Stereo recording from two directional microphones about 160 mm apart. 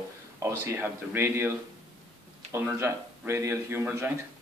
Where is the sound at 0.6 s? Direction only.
15° right (ahead or behind).